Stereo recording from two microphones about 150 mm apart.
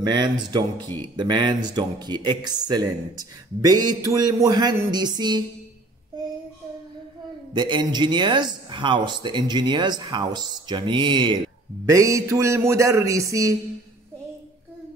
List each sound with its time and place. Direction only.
0.0 s speech: 30° right (ahead or behind)
7.5 s speech: 30° right (ahead or behind)
11.8 s speech: 20° right (ahead or behind)